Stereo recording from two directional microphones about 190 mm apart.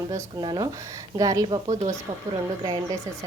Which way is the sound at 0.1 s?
20° right (ahead or behind).